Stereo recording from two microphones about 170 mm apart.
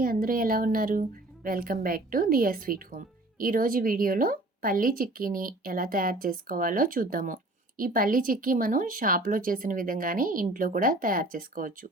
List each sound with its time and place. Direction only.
0.0 s speech: 55° right (ahead or behind)